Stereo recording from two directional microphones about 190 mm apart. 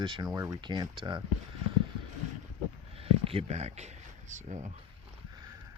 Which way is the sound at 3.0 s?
30° right (ahead or behind).